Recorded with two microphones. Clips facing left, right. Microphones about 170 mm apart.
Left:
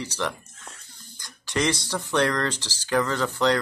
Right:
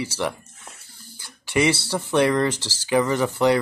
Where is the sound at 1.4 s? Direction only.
10° right (ahead or behind).